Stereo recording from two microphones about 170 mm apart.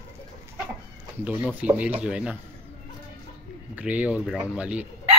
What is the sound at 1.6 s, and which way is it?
Speech, 10° right (ahead or behind).